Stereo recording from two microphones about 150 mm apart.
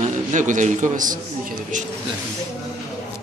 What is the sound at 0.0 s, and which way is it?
A man's voice, 55° right (ahead or behind).